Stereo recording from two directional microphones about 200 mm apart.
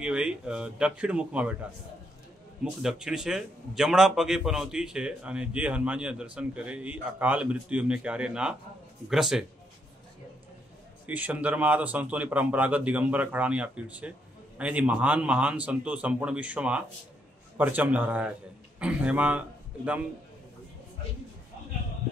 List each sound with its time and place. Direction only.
0.0 s speech: 5° right (ahead or behind)
11.1 s a man's voice: 10° right (ahead or behind)